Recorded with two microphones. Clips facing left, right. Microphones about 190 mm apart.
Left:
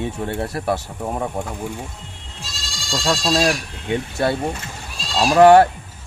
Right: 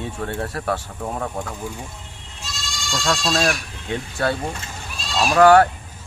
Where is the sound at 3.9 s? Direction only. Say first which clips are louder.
Left 3 dB; 20° left (ahead or behind).